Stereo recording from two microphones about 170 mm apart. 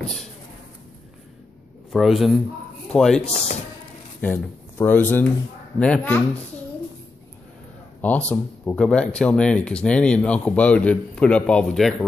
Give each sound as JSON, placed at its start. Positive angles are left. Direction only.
{"t": 1.9, "sound": "a man's voice", "side_deg": 0}
{"t": 3.3, "sound": "speech", "side_deg": 40}
{"t": 4.2, "sound": "speech", "side_deg": 10}
{"t": 8.0, "sound": "speech", "side_deg": 10}